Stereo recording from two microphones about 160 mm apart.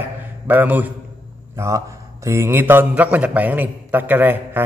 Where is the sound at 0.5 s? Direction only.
10° right (ahead or behind).